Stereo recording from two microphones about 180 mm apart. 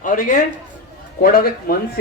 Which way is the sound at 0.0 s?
45° left (ahead or behind).